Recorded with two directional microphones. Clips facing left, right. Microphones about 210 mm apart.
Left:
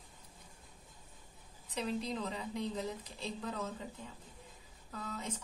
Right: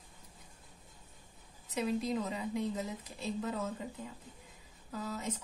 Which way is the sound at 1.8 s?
5° right (ahead or behind).